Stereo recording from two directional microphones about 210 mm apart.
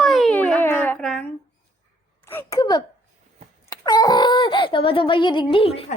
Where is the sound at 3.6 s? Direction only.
15° left (ahead or behind).